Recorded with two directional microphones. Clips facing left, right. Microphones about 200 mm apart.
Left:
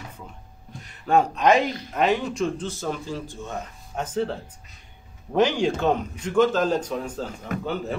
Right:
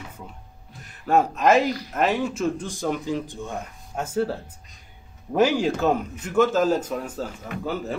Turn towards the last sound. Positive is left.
turn(degrees=-5)  # may be behind; listen again after turning